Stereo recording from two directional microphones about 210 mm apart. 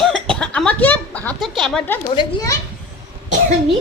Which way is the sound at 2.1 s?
15° left (ahead or behind).